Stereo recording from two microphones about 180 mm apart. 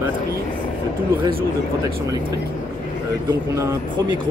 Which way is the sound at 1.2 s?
30° right (ahead or behind).